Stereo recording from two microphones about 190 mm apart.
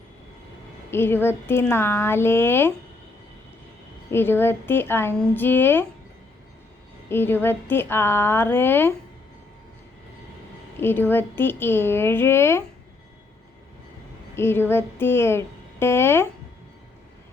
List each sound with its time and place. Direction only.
0.9 s speech: 10° left (ahead or behind)
4.1 s speech: 10° left (ahead or behind)
7.1 s speech: 10° left (ahead or behind)
10.8 s speech: 10° left (ahead or behind)
14.3 s speech: 10° left (ahead or behind)